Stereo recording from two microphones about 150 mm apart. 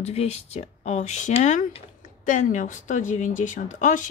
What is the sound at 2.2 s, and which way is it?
Speech, 55° left (ahead or behind).